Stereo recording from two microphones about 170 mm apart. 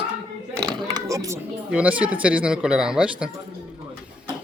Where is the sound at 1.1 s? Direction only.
20° right (ahead or behind).